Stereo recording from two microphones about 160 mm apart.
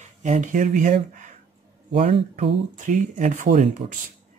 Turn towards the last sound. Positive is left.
turn(degrees=-45)  # may be behind; listen again after turning